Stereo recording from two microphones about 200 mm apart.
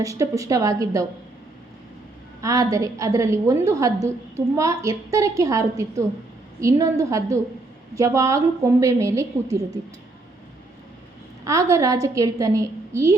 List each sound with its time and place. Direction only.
0.0 s a woman's voice: 15° right (ahead or behind)
2.4 s a woman's voice: 15° right (ahead or behind)
11.4 s a woman's voice: 15° right (ahead or behind)